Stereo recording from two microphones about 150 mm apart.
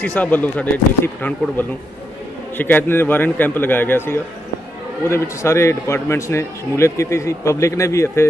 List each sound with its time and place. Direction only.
0.0 s a man's voice: 10° left (ahead or behind)